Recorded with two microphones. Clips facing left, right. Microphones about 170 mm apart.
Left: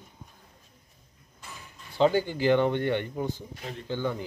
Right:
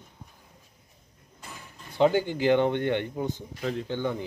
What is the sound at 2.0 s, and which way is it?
Speech, 15° right (ahead or behind).